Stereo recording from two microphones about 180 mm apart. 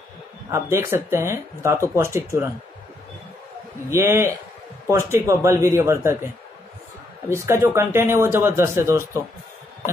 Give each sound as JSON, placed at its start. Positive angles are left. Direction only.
{"t": 0.5, "sound": "a man's voice", "side_deg": -15}
{"t": 3.9, "sound": "a man's voice", "side_deg": -15}
{"t": 7.2, "sound": "a man's voice", "side_deg": -15}